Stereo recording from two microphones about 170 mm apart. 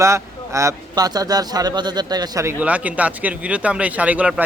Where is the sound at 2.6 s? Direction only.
10° right (ahead or behind).